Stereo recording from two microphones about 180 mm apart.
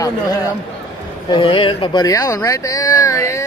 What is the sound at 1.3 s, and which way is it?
Speech, 30° left (ahead or behind).